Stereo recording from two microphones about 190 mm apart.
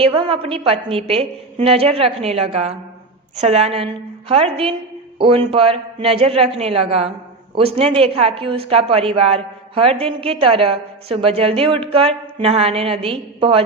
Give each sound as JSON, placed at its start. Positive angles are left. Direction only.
{"t": 0.0, "sound": "a woman's voice", "side_deg": -30}